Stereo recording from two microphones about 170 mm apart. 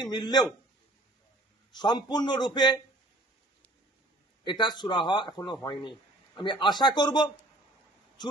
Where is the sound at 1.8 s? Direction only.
25° left (ahead or behind).